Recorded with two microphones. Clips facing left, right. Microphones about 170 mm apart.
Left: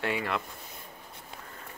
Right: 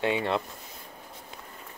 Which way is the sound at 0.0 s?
25° right (ahead or behind).